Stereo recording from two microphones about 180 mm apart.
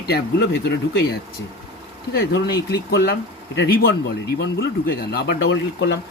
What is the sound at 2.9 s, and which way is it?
Speech, 65° left (ahead or behind).